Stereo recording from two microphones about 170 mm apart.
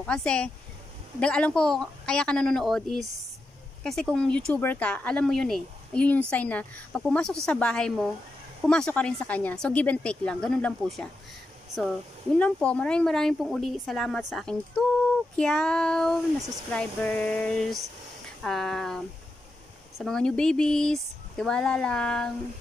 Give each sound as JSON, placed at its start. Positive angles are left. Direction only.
{"t": 0.0, "sound": "speech", "side_deg": 5}
{"t": 12.4, "sound": "speech", "side_deg": 5}